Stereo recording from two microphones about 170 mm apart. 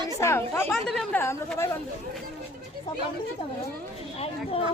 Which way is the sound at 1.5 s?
15° left (ahead or behind).